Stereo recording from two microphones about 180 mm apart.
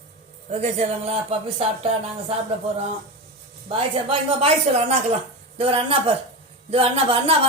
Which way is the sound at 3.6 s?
30° right (ahead or behind).